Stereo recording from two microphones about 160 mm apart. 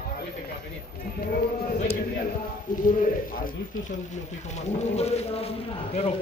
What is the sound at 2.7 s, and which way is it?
Speech, 55° left (ahead or behind).